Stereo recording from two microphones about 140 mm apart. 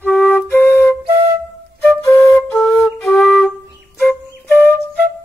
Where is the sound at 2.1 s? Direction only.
20° left (ahead or behind).